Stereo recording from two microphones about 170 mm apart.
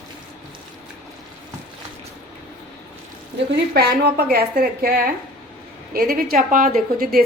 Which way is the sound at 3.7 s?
70° right (ahead or behind).